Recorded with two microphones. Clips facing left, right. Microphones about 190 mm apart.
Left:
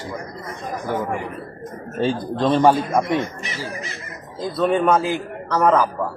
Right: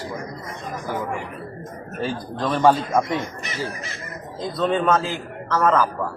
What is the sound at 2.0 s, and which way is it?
Speech, 25° left (ahead or behind).